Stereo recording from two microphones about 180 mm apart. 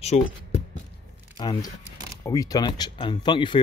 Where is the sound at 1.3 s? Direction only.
25° left (ahead or behind).